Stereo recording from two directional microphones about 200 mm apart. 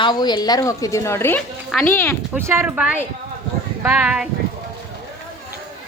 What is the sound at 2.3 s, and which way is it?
A woman's voice, 15° right (ahead or behind).